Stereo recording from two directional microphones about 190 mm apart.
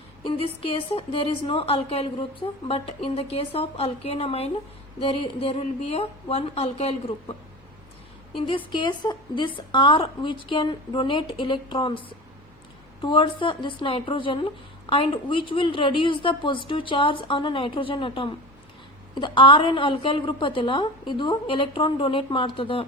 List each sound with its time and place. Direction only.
0.3 s a woman's voice: 30° left (ahead or behind)
8.4 s a woman's voice: 25° left (ahead or behind)